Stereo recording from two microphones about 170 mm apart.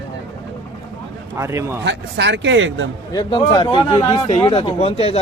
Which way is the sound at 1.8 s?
90° right.